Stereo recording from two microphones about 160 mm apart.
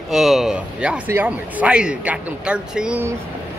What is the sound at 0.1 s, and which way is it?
A man's voice, centre (ahead or behind).